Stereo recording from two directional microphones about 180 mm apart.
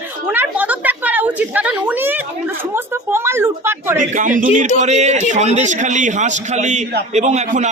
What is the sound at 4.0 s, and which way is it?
A man's voice, 45° right (ahead or behind).